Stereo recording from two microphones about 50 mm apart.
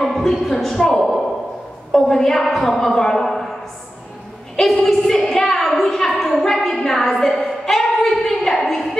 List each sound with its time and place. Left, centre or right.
0.0 s a man's voice: centre
4.7 s a sound: centre
6.3 s a woman's voice: centre